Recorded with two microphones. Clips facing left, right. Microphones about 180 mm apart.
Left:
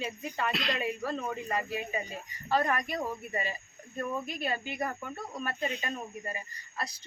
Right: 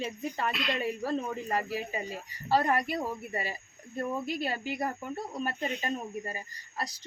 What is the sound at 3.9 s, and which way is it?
Speech, 35° right (ahead or behind).